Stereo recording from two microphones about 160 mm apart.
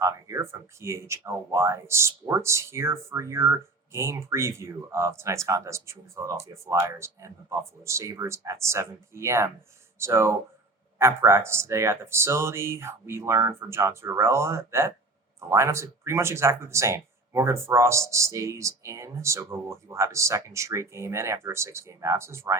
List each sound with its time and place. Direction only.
0.0 s speech: 20° right (ahead or behind)